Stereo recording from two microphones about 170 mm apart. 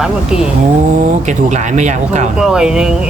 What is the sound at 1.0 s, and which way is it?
Speech, 45° right (ahead or behind).